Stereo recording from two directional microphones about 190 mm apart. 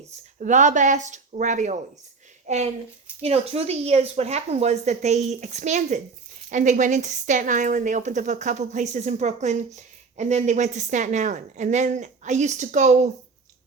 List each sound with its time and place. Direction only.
0.3 s speech: 40° right (ahead or behind)